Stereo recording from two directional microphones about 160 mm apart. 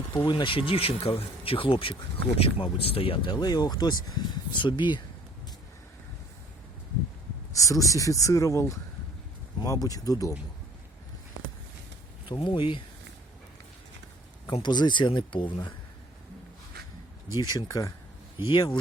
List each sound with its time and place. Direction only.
0.1 s speech: 30° left (ahead or behind)
7.5 s speech: 20° left (ahead or behind)
12.4 s speech: 30° left (ahead or behind)
14.4 s speech: 30° left (ahead or behind)
17.3 s speech: 20° left (ahead or behind)